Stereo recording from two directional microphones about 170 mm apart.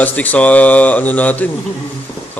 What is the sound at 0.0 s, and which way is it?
Speech, 10° left (ahead or behind).